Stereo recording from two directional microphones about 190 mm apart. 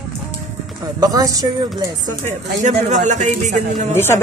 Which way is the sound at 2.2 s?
40° right (ahead or behind).